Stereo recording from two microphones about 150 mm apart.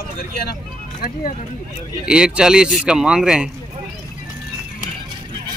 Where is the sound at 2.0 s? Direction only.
5° right (ahead or behind).